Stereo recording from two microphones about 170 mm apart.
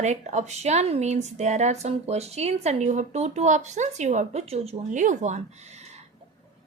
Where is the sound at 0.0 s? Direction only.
45° right (ahead or behind).